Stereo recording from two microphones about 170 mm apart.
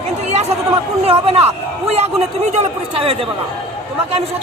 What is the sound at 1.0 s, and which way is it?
A man's voice, 35° right (ahead or behind).